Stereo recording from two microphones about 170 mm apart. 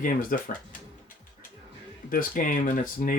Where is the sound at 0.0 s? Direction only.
55° left (ahead or behind).